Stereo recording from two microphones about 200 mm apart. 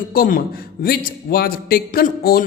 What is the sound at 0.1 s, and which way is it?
Speech, 45° left (ahead or behind).